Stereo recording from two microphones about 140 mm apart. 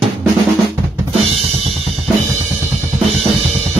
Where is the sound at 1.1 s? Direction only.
45° right (ahead or behind).